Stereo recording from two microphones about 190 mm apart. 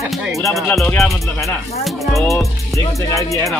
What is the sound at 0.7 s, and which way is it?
Music, 5° left (ahead or behind).